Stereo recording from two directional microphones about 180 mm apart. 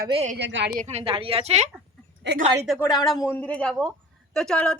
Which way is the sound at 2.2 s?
75° right (ahead or behind).